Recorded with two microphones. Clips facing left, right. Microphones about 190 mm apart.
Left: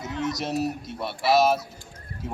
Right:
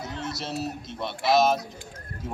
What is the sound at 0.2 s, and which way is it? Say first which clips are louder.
A man's voice: left 7 dB; 15° left (ahead or behind).